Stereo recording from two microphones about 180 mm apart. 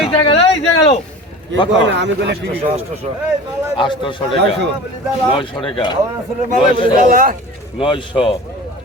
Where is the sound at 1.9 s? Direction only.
80° right.